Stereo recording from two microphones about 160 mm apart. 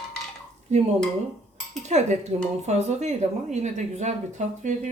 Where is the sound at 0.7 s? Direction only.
45° right (ahead or behind).